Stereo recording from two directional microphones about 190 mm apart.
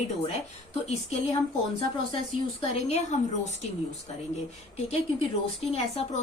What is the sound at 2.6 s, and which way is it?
Speech, 35° left (ahead or behind).